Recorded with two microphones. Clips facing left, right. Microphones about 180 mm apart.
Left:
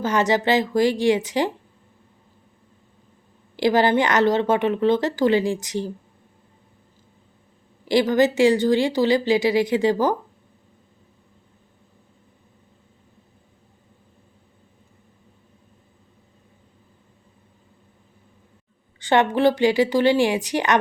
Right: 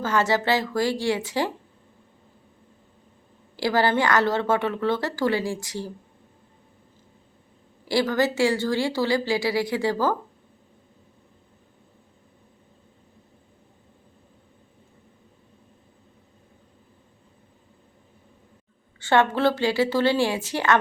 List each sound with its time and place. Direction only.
0.0 s a woman's voice: 20° left (ahead or behind)
3.6 s a woman's voice: 20° left (ahead or behind)
7.9 s a woman's voice: 20° left (ahead or behind)
18.9 s a woman's voice: 15° left (ahead or behind)